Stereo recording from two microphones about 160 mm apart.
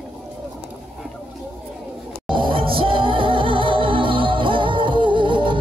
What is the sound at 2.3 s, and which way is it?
Music, 30° right (ahead or behind).